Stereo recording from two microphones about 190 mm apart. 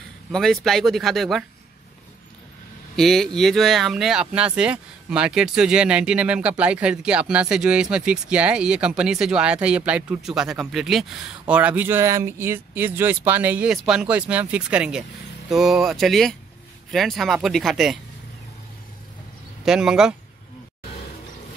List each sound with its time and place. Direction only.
0.3 s speech: centre (ahead or behind)
3.0 s speech: centre (ahead or behind)
19.6 s speech: 5° right (ahead or behind)